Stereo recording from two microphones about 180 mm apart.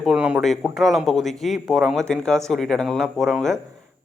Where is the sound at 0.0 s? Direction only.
5° right (ahead or behind).